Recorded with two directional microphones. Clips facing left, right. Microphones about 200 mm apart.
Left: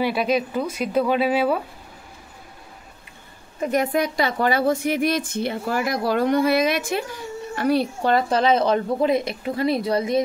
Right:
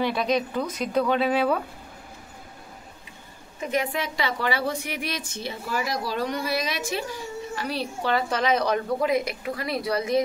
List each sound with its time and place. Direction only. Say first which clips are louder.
0.0 s speech: left 3 dB; 5° left (ahead or behind)
3.7 s a woman's voice: left 6 dB; 45° left (ahead or behind)
8.3 s speech: left 4 dB; 30° left (ahead or behind)